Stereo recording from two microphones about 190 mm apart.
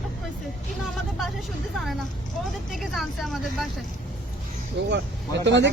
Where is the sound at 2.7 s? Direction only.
Centre (ahead or behind).